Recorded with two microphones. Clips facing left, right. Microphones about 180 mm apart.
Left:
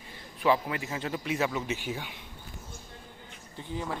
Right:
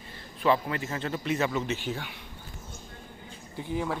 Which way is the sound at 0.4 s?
10° left (ahead or behind).